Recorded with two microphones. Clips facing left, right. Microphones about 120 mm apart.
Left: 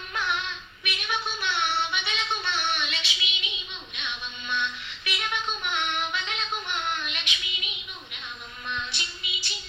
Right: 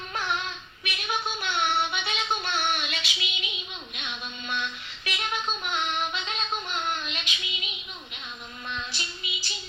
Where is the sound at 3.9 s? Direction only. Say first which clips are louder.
Left 1 dB; 35° right (ahead or behind).